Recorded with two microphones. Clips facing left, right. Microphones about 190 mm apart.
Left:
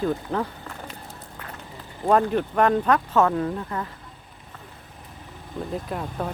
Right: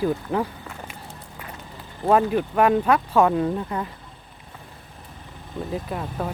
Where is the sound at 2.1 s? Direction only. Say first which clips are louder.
Right 1 dB; 5° right (ahead or behind).